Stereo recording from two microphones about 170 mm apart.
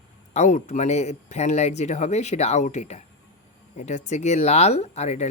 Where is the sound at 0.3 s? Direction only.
45° left (ahead or behind).